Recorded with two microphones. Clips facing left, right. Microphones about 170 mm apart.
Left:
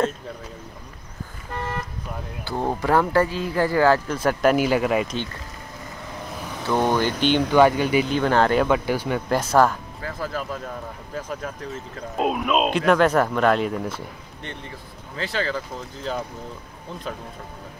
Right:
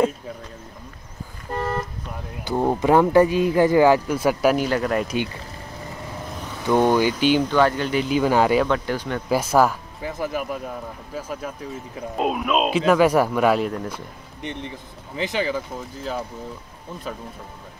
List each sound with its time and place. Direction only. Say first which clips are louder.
1.5 s toot: right 5 dB; 40° right (ahead or behind)
2.4 s speech: right 4 dB; 10° right (ahead or behind)
4.6 s speech: left 2 dB; 5° left (ahead or behind)
5.0 s speech: right 4 dB; 10° right (ahead or behind)
6.7 s speech: right 3 dB; 15° right (ahead or behind)
7.5 s speech: left 3 dB; 15° left (ahead or behind)
8.1 s speech: right 1 dB; 10° right (ahead or behind)
8.6 s speech: left 2 dB; 10° left (ahead or behind)
9.3 s speech: right 1 dB; 10° right (ahead or behind)
13.8 s speech: left 1 dB; 15° right (ahead or behind)